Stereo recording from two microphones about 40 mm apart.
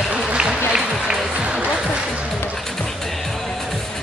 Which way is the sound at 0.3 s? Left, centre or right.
Right.